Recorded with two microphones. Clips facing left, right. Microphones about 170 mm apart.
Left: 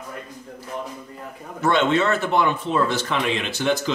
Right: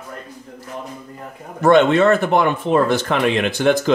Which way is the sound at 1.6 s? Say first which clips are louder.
Right 7 dB; 50° right (ahead or behind).